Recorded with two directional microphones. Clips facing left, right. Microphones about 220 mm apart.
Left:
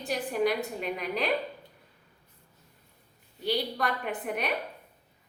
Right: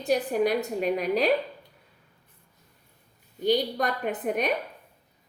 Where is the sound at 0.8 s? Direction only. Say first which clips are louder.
Right 8 dB; 45° right (ahead or behind).